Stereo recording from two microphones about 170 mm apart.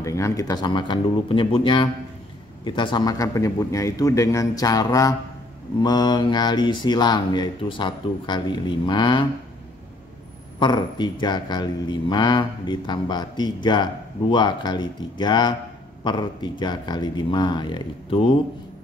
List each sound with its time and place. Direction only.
0.0 s speech: 15° left (ahead or behind)
10.6 s speech: 25° left (ahead or behind)